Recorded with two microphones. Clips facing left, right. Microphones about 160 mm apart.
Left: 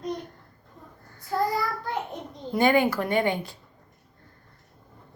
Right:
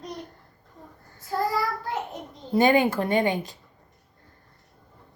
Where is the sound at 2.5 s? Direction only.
20° right (ahead or behind).